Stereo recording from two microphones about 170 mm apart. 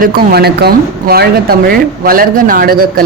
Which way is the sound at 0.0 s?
60° right (ahead or behind).